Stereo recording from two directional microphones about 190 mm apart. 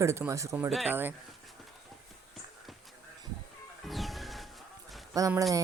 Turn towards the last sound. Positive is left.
turn(degrees=-15)  # may be behind; listen again after turning